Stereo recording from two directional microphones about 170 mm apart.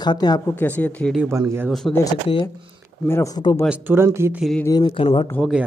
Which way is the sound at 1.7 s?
Centre (ahead or behind).